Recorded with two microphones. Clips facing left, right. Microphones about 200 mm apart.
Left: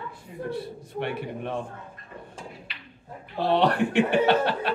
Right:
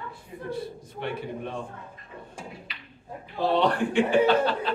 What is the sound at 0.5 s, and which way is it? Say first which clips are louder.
Speech: left 2 dB; 65° left (ahead or behind).